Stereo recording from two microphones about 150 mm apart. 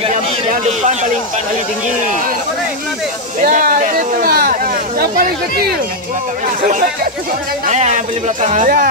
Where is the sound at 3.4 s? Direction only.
65° right (ahead or behind); by 5.7 s 90° right.